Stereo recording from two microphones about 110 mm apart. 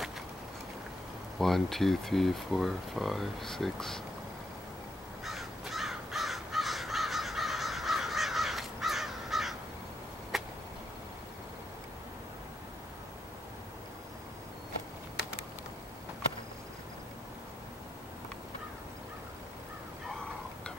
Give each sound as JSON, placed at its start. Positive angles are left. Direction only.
{"t": 1.4, "sound": "speech", "side_deg": 0}
{"t": 5.2, "sound": "crow", "side_deg": 0}
{"t": 10.3, "sound": "a sound", "side_deg": 0}